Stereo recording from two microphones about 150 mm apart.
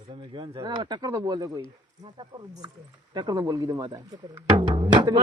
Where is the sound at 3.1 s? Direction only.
25° right (ahead or behind).